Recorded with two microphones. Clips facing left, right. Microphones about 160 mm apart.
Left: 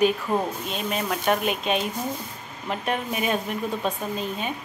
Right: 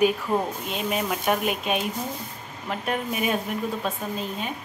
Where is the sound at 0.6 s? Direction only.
15° right (ahead or behind).